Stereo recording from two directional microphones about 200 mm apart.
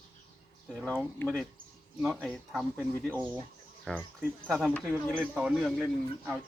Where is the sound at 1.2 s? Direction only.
10° left (ahead or behind).